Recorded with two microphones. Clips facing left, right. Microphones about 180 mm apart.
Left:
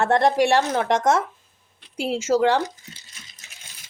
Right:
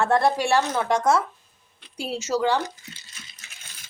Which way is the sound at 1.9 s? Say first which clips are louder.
Left 6 dB; 90° left.